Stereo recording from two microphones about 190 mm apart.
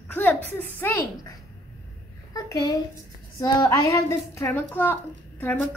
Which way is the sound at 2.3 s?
20° left (ahead or behind).